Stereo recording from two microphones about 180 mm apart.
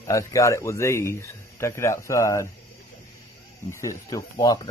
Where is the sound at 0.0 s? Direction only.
15° left (ahead or behind).